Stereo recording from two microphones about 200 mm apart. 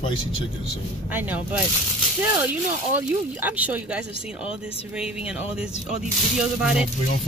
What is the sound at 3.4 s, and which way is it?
Speech, 10° right (ahead or behind).